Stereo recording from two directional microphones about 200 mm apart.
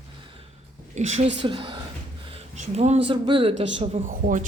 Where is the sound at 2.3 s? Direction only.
35° right (ahead or behind).